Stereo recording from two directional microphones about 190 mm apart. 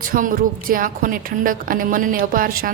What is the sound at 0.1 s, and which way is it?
A woman's voice, 45° right (ahead or behind).